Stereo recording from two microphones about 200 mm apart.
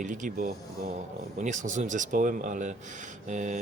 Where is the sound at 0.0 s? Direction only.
40° right (ahead or behind).